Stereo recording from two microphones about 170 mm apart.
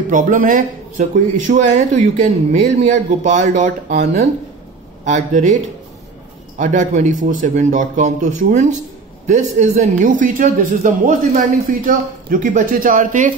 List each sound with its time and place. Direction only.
0.1 s a man's voice: 50° right (ahead or behind)
6.6 s a man's voice: 45° right (ahead or behind)